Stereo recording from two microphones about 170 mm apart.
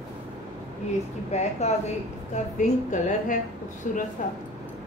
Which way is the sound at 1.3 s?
40° left (ahead or behind).